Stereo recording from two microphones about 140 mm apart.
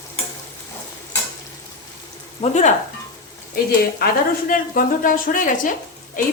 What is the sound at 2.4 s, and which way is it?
Speech, 55° left (ahead or behind).